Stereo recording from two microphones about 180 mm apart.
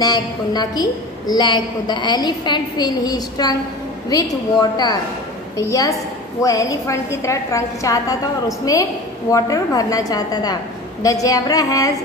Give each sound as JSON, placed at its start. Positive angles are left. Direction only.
{"t": 0.0, "sound": "a woman's voice", "side_deg": 20}
{"t": 9.3, "sound": "a woman's voice", "side_deg": 20}